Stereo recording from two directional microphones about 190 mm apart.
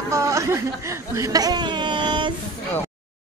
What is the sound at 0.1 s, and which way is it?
Speech, 15° right (ahead or behind).